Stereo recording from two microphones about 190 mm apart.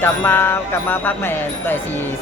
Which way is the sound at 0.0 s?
10° left (ahead or behind).